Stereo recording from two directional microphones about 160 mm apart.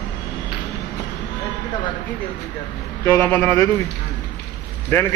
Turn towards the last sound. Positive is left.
turn(degrees=10)  # may be behind; listen again after turning